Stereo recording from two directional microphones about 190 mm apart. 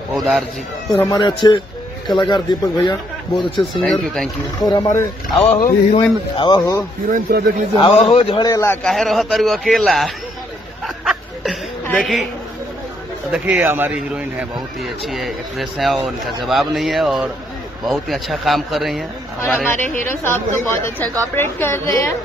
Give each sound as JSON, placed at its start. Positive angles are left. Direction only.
{"t": 0.1, "sound": "speech", "side_deg": 0}
{"t": 0.8, "sound": "a man's voice", "side_deg": 20}
{"t": 3.8, "sound": "a man's voice", "side_deg": 0}
{"t": 4.6, "sound": "a man's voice", "side_deg": 20}
{"t": 5.5, "sound": "speech", "side_deg": 40}
{"t": 6.3, "sound": "a man's voice", "side_deg": 25}
{"t": 7.1, "sound": "speech", "side_deg": -50}
{"t": 7.7, "sound": "a man's voice", "side_deg": 30}
{"t": 8.8, "sound": "a man's voice", "side_deg": 0}
{"t": 11.1, "sound": "chuckle", "side_deg": 0}
{"t": 13.3, "sound": "a man's voice", "side_deg": -10}